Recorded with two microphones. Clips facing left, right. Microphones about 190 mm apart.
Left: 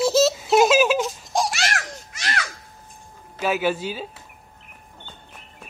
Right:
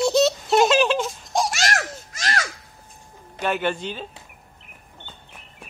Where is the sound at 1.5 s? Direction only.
40° right (ahead or behind).